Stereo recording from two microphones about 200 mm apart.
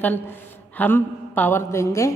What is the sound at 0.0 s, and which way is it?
A man's voice, 10° left (ahead or behind).